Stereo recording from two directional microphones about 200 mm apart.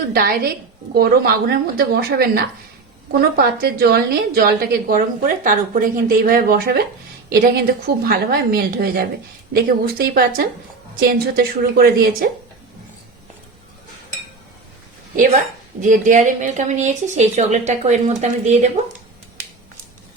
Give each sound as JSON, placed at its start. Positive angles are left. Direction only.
{"t": 0.1, "sound": "a woman's voice", "side_deg": -50}
{"t": 15.1, "sound": "speech", "side_deg": -40}